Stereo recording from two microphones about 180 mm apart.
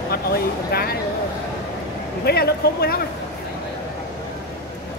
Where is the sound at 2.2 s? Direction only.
60° left (ahead or behind).